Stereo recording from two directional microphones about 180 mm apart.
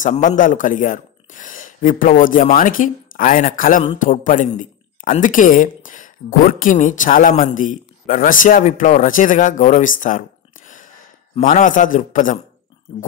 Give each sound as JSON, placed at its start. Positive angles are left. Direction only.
{"t": 0.0, "sound": "a woman's voice", "side_deg": 40}
{"t": 11.3, "sound": "a woman's voice", "side_deg": 45}